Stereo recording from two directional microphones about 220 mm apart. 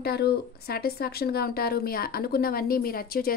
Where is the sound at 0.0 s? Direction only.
45° left (ahead or behind).